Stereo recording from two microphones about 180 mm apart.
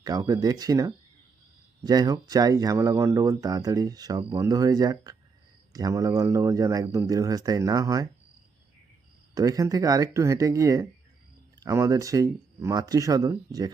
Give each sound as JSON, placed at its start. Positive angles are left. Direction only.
{"t": 0.0, "sound": "speech", "side_deg": -20}
{"t": 9.3, "sound": "speech", "side_deg": -20}